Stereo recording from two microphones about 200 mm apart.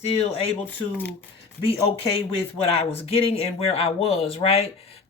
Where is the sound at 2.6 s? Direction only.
30° left (ahead or behind).